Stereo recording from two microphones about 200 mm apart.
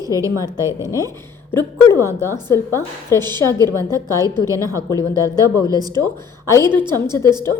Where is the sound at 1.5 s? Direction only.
10° left (ahead or behind).